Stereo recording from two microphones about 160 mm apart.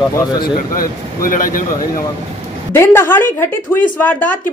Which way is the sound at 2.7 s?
15° left (ahead or behind).